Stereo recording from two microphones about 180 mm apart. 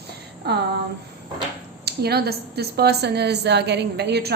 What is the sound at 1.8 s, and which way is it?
Speech, 60° right (ahead or behind).